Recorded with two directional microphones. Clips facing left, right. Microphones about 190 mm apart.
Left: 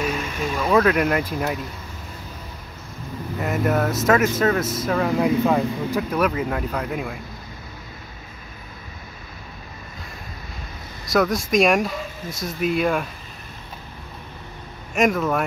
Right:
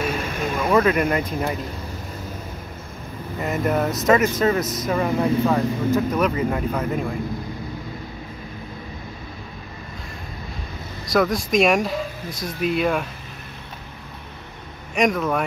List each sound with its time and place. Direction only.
0.2 s vehicle: 50° right (ahead or behind)
0.6 s speech: centre (ahead or behind)
3.3 s speech: 5° left (ahead or behind)
11.1 s speech: centre (ahead or behind)
15.0 s speech: centre (ahead or behind)